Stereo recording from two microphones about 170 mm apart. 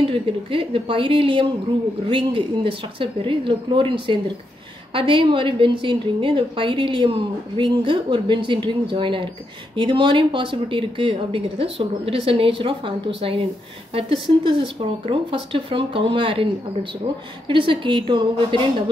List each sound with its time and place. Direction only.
0.0 s a woman's voice: 30° right (ahead or behind)
14.8 s a woman's voice: 30° right (ahead or behind)